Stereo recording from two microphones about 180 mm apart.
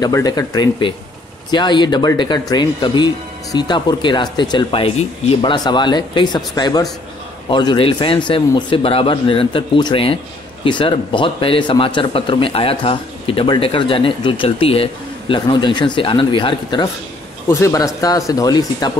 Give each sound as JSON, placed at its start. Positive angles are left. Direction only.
{"t": 0.0, "sound": "a man's voice", "side_deg": 20}